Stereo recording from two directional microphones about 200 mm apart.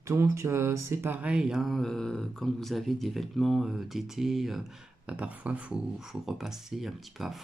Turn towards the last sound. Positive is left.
turn(degrees=0)  # may be behind; listen again after turning